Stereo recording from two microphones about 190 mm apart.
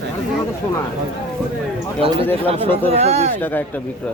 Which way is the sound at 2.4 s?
30° right (ahead or behind).